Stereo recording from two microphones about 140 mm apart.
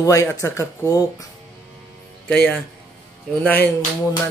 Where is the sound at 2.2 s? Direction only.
5° left (ahead or behind).